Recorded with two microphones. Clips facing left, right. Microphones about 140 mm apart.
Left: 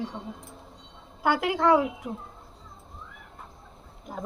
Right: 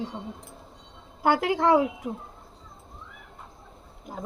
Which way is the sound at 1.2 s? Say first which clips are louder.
Right 1 dB; 30° right (ahead or behind).